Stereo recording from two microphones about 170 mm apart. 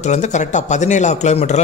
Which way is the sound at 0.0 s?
45° left (ahead or behind).